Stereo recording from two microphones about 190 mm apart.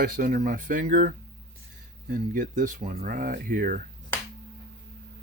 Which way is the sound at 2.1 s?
45° right (ahead or behind).